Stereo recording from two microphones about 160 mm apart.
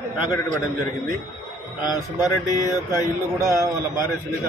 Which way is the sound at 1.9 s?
25° left (ahead or behind).